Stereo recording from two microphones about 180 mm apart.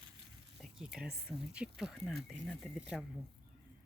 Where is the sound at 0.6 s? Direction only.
Centre (ahead or behind).